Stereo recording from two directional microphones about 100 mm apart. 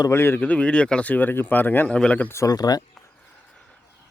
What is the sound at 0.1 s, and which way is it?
Speech, 25° left (ahead or behind).